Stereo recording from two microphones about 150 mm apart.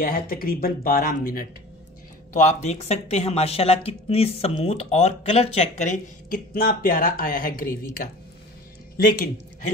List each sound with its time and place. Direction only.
0.0 s speech: 75° left (ahead or behind)
2.3 s speech: 50° left (ahead or behind); by 7.7 s 70° left (ahead or behind)
8.9 s speech: 70° left (ahead or behind)